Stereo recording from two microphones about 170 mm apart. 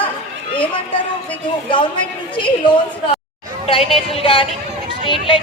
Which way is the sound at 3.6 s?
35° left (ahead or behind).